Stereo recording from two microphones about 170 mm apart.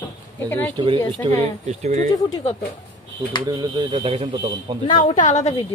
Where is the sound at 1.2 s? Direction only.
30° right (ahead or behind).